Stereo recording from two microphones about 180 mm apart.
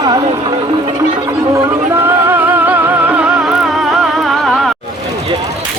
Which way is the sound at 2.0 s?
10° right (ahead or behind).